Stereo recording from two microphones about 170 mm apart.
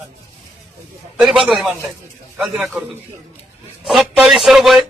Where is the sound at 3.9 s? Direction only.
5° right (ahead or behind).